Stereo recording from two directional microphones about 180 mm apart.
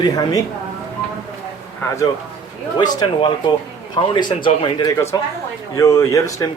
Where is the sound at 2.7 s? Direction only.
25° left (ahead or behind).